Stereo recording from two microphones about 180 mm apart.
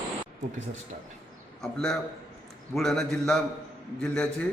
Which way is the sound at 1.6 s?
Centre (ahead or behind).